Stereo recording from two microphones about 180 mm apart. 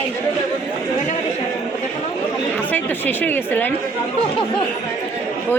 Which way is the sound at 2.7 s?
10° left (ahead or behind).